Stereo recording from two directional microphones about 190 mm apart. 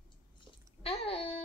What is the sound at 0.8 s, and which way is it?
Speech, 30° left (ahead or behind).